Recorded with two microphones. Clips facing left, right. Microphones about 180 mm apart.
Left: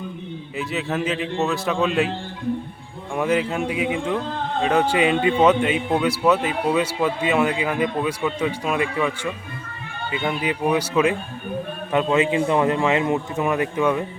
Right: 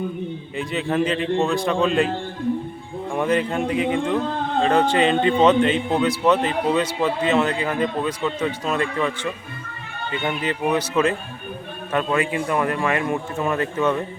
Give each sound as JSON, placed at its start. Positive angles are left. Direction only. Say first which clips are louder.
{"t": 0.5, "sound": "a man's voice", "louder": "right 2 dB", "side_deg": 5}
{"t": 3.1, "sound": "a man's voice", "louder": "even", "side_deg": 5}